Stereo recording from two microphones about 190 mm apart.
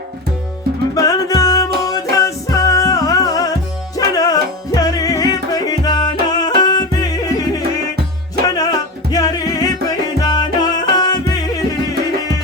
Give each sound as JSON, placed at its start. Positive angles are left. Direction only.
{"t": 0.9, "sound": "music", "side_deg": 20}